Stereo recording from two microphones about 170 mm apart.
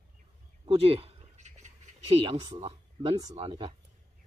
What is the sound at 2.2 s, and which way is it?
Speech, 30° right (ahead or behind).